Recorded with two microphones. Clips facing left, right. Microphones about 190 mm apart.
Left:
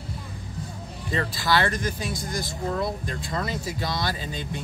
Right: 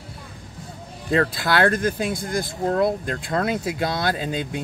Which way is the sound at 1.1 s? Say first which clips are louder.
Right 4 dB; 55° right (ahead or behind).